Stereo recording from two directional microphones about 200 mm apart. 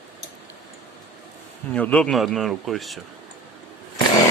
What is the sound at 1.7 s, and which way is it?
Speech, 5° left (ahead or behind).